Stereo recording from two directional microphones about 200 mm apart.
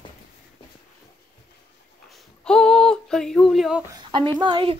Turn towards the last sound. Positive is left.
turn(degrees=-25)  # may be behind; listen again after turning